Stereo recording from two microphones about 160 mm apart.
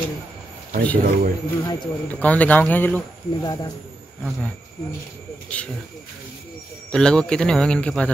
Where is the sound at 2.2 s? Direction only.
10° left (ahead or behind).